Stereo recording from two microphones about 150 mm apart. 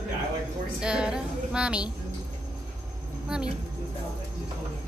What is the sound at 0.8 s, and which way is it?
A woman's voice, 5° right (ahead or behind).